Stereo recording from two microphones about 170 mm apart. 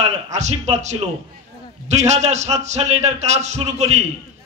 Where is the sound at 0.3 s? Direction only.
40° right (ahead or behind).